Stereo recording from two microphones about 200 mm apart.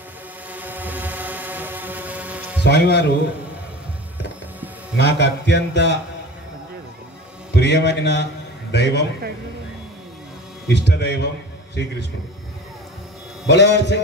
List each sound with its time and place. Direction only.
0.5 s vehicle: 10° right (ahead or behind)
2.6 s a man's voice: 60° left (ahead or behind)
4.9 s a man's voice: 60° left (ahead or behind)
7.5 s a man's voice: 55° left (ahead or behind)
10.7 s a man's voice: 60° left (ahead or behind)
13.5 s a man's voice: 60° left (ahead or behind)